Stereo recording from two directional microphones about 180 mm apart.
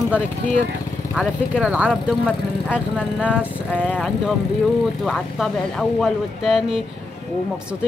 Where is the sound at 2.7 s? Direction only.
10° left (ahead or behind).